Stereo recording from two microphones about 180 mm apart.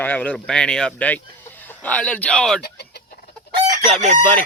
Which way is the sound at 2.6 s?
65° left (ahead or behind).